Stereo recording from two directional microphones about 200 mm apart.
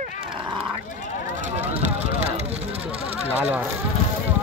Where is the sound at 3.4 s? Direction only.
10° right (ahead or behind).